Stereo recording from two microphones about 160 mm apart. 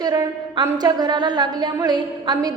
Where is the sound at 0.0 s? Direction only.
25° right (ahead or behind).